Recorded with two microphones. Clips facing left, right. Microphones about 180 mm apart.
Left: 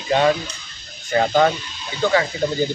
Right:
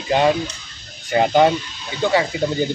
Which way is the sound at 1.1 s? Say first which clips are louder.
Right 2 dB; 15° right (ahead or behind).